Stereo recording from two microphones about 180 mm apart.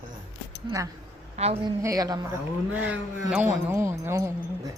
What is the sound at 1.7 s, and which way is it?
Speech, 20° right (ahead or behind).